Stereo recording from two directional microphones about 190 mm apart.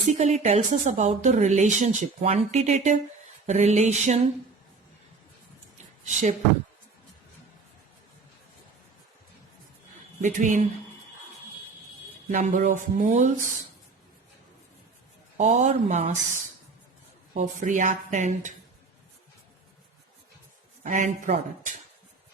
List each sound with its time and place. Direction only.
0.1 s a woman's voice: 35° right (ahead or behind)
5.7 s a sound: 40° right (ahead or behind)
10.2 s speech: 40° right (ahead or behind)
12.3 s a woman's voice: 40° right (ahead or behind)
15.4 s a woman's voice: 40° right (ahead or behind)
17.3 s a woman's voice: 40° right (ahead or behind)
20.8 s a woman's voice: 40° right (ahead or behind)